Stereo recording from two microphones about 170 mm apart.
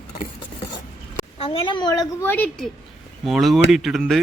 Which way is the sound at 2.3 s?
10° left (ahead or behind).